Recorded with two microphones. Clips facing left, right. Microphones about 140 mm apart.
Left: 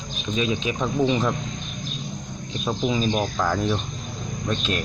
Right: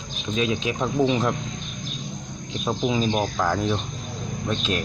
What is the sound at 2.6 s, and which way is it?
Speech, 10° right (ahead or behind).